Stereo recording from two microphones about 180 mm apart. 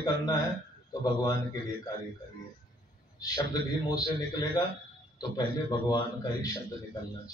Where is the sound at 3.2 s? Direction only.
20° left (ahead or behind).